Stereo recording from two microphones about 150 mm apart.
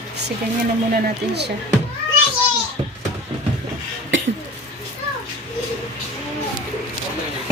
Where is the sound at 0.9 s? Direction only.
90° right.